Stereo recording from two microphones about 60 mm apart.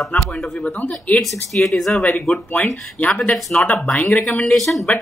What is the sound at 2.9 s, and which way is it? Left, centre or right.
Speech, left.